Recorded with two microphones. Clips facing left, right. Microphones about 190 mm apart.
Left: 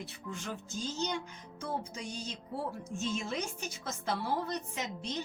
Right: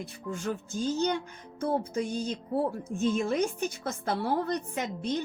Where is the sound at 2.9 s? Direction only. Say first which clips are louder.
Right 8 dB; 55° right (ahead or behind).